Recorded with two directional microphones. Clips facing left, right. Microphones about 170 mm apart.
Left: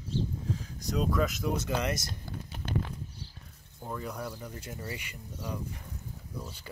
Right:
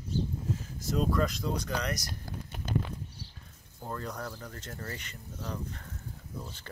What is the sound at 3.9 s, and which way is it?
Speech, 10° left (ahead or behind).